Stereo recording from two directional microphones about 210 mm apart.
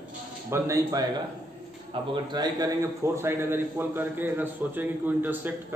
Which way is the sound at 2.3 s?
15° right (ahead or behind).